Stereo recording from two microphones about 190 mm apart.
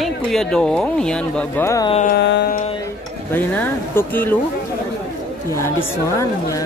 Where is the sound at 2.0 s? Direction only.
60° left (ahead or behind).